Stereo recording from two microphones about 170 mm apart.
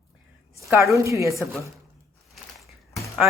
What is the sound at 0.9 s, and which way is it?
Speech, 15° right (ahead or behind).